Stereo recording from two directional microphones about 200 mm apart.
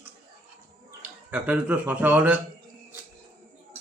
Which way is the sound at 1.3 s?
10° right (ahead or behind).